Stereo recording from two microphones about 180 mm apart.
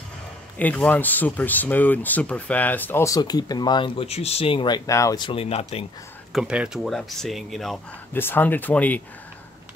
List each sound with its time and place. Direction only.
0.6 s speech: 10° left (ahead or behind); by 5.9 s 35° left (ahead or behind)
6.3 s speech: 5° right (ahead or behind)